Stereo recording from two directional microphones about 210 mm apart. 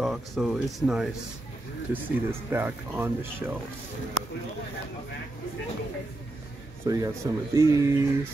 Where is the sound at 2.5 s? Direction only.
10° right (ahead or behind).